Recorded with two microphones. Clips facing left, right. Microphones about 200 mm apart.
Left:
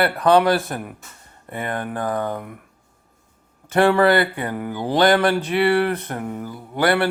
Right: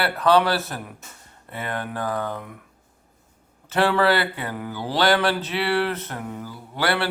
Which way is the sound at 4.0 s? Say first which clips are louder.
Left 4 dB; 50° left (ahead or behind).